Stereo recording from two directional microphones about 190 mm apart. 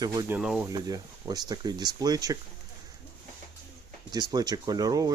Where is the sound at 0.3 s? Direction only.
5° right (ahead or behind).